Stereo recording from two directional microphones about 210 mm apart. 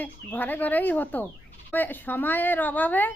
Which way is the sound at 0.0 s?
10° left (ahead or behind).